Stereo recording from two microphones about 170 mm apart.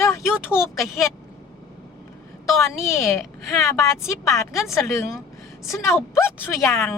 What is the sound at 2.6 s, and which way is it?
A woman's voice, 15° left (ahead or behind).